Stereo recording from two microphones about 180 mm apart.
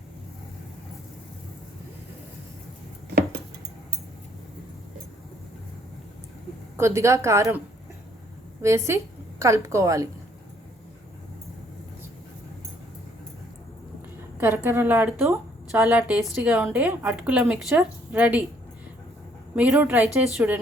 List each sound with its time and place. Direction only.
6.7 s a woman's voice: 15° right (ahead or behind)
8.6 s a woman's voice: 15° right (ahead or behind)
14.4 s a woman's voice: 15° right (ahead or behind)
15.2 s a sound: 15° right (ahead or behind)
15.8 s a woman's voice: 10° right (ahead or behind)
19.5 s a woman's voice: 10° right (ahead or behind)